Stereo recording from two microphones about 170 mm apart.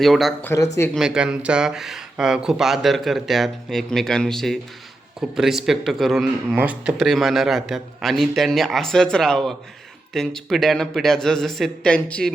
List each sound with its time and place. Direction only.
0.0 s speech: centre (ahead or behind)
0.4 s speech: 15° left (ahead or behind)
0.9 s speech: 5° right (ahead or behind)